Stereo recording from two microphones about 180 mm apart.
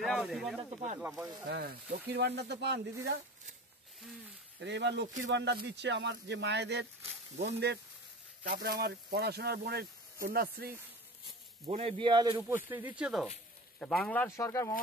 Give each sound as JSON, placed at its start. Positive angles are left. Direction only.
{"t": 0.0, "sound": "speech", "side_deg": 0}
{"t": 0.6, "sound": "speech", "side_deg": -30}
{"t": 1.0, "sound": "speech", "side_deg": -20}
{"t": 1.5, "sound": "speech", "side_deg": -60}
{"t": 4.6, "sound": "speech", "side_deg": -75}
{"t": 11.6, "sound": "speech", "side_deg": -35}
{"t": 12.4, "sound": "speech", "side_deg": -10}